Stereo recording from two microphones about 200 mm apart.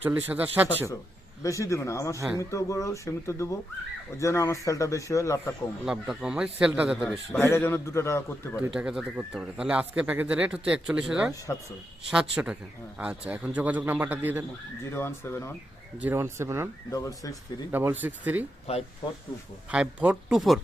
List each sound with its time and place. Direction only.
0.0 s a man's voice: 10° right (ahead or behind)
1.4 s a man's voice: 15° left (ahead or behind)
5.8 s speech: centre (ahead or behind)
7.0 s a man's voice: 10° left (ahead or behind)
8.6 s speech: 5° right (ahead or behind)
13.0 s a man's voice: 5° right (ahead or behind)
14.9 s a man's voice: 10° left (ahead or behind)
16.0 s a man's voice: 10° right (ahead or behind)
16.9 s a man's voice: 15° left (ahead or behind)
17.7 s a man's voice: 10° right (ahead or behind)
18.7 s speech: 30° left (ahead or behind)
19.7 s speech: 5° right (ahead or behind)